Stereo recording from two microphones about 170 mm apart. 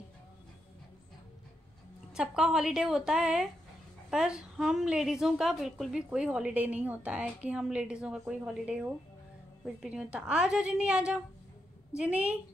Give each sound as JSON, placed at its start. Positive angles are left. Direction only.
{"t": 2.1, "sound": "a woman's voice", "side_deg": -5}